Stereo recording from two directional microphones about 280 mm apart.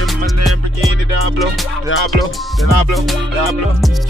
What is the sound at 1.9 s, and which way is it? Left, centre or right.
Music, left.